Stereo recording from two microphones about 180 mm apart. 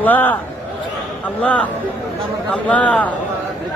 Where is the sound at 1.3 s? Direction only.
5° left (ahead or behind).